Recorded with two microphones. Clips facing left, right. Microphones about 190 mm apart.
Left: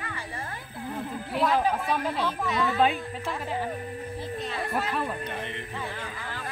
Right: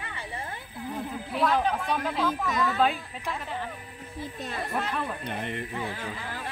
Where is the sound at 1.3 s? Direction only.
Centre (ahead or behind).